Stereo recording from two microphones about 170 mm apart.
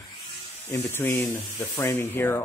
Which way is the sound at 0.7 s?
15° left (ahead or behind).